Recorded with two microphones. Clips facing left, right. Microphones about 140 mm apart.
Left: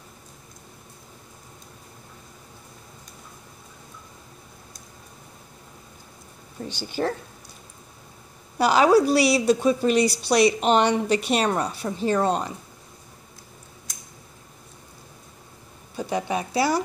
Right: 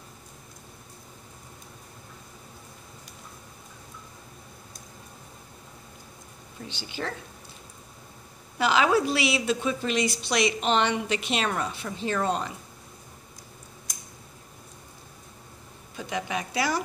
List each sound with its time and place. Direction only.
6.7 s speech: 45° left (ahead or behind)
8.5 s a woman's voice: 40° left (ahead or behind)
16.0 s a woman's voice: 35° left (ahead or behind)